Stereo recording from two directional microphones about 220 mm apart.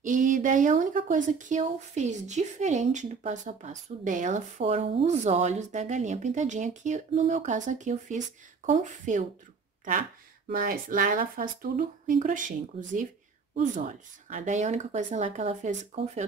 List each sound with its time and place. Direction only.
0.0 s speech: 35° right (ahead or behind)
10.5 s speech: 40° right (ahead or behind)